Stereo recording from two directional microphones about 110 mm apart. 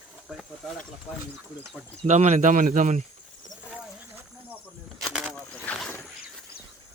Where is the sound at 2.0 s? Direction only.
90° right.